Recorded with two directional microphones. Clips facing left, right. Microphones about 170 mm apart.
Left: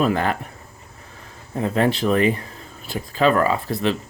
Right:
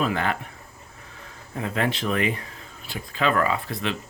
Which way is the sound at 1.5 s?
35° left (ahead or behind).